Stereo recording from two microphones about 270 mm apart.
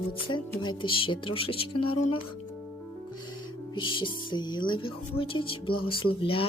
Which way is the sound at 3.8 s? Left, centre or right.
Centre.